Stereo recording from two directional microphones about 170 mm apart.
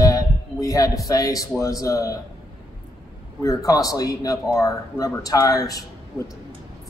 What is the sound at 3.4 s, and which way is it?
Speech, 20° left (ahead or behind).